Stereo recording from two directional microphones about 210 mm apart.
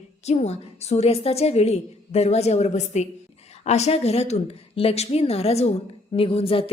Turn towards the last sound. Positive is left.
turn(degrees=25)  # may be behind; listen again after turning